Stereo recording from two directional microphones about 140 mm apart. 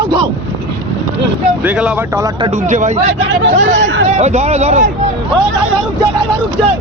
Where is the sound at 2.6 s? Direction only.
60° right (ahead or behind).